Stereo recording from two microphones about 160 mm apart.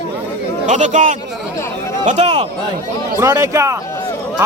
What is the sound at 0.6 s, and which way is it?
Speech, 50° right (ahead or behind).